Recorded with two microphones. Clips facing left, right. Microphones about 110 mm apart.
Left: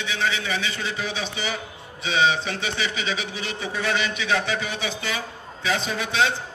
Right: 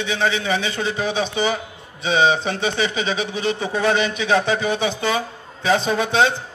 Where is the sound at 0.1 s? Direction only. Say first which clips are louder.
Right 5 dB; 30° right (ahead or behind).